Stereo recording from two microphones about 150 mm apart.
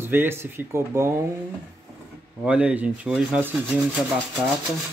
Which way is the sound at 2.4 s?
10° right (ahead or behind).